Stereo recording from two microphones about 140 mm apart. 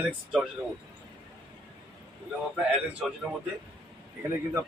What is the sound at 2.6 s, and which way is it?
Speech, 5° right (ahead or behind).